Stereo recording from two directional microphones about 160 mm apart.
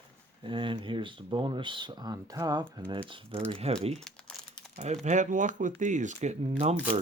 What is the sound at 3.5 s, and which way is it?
Speech, 40° right (ahead or behind).